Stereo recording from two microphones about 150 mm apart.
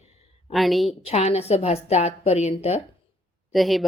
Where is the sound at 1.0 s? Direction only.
45° left (ahead or behind).